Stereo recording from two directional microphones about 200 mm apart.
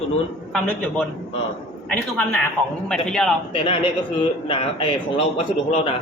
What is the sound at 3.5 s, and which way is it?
A man's voice, 25° left (ahead or behind).